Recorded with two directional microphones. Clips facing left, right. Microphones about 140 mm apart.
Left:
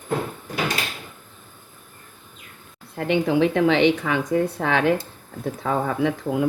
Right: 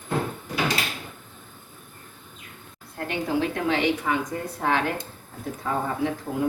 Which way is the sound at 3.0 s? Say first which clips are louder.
Left 6 dB; 80° left.